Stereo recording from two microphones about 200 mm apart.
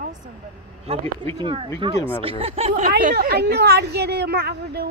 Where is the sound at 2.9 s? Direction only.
45° right (ahead or behind).